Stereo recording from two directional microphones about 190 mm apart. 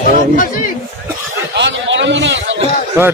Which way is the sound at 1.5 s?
70° right (ahead or behind).